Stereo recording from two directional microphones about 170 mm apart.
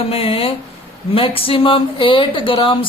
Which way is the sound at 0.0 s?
35° left (ahead or behind).